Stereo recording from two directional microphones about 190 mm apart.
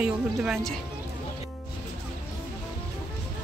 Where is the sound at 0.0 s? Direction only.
5° right (ahead or behind).